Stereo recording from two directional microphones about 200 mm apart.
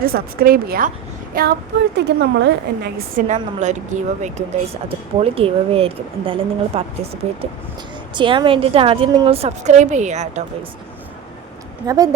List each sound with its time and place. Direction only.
0.0 s a woman's voice: 50° right (ahead or behind)
2.0 s a woman's voice: 60° right (ahead or behind); by 6.8 s 25° right (ahead or behind)
8.1 s a woman's voice: 25° right (ahead or behind)
11.9 s a woman's voice: 20° right (ahead or behind)